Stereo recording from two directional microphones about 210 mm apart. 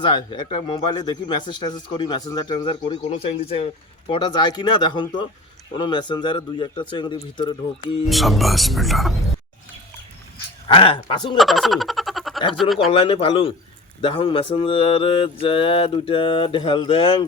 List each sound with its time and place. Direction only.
0.1 s speech: 20° left (ahead or behind)
8.0 s speech: centre (ahead or behind)
10.8 s speech: 25° left (ahead or behind)
11.3 s a sound: centre (ahead or behind)
12.5 s speech: centre (ahead or behind)
12.9 s speech: 25° left (ahead or behind)